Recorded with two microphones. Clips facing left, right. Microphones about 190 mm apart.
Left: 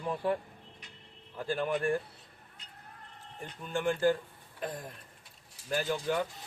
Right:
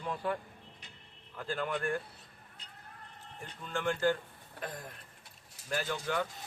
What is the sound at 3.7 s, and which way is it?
Speech, 15° left (ahead or behind).